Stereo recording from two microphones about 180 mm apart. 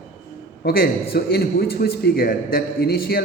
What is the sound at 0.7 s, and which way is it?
A man's voice, 55° left (ahead or behind).